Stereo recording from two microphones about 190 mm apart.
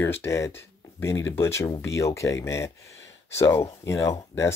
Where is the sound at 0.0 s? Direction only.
15° left (ahead or behind).